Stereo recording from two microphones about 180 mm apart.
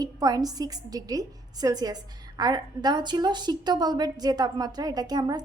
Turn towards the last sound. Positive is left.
turn(degrees=-20)  # may be behind; listen again after turning